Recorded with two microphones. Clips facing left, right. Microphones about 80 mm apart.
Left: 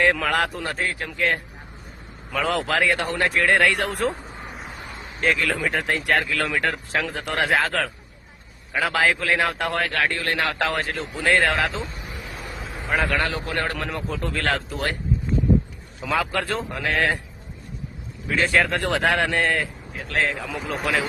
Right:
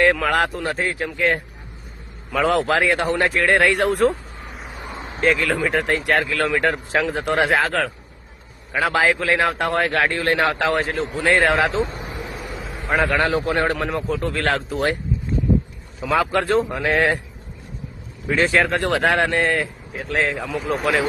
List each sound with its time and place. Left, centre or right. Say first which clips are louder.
0.0 s speech: right 3 dB; centre
4.4 s vehicle: right 3 dB; centre
4.9 s a sound: right 5 dB; right
5.2 s speech: right 3 dB; centre
9.9 s speech: right 4 dB; right
10.4 s speech: right 5 dB; centre
11.8 s speech: right 9 dB; right
12.5 s a sound: right 3 dB; centre
13.1 s a man's voice: right 5 dB; centre
13.7 s speech: right 6 dB; centre
16.0 s speech: right 5 dB; centre
18.3 s speech: right 2 dB; centre